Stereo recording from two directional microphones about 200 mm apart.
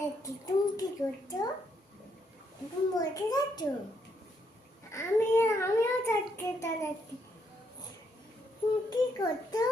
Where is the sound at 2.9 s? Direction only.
20° left (ahead or behind).